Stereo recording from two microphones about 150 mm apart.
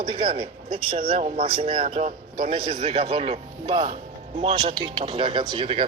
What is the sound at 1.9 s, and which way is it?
A man's voice, 50° right (ahead or behind).